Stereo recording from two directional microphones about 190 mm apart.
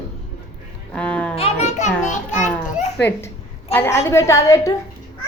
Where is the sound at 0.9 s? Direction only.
5° left (ahead or behind).